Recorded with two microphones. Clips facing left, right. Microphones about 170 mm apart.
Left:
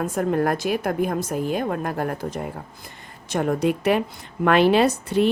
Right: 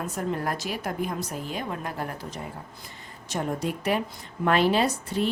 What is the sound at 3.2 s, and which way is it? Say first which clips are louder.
A woman's voice: left 7 dB; 70° left (ahead or behind).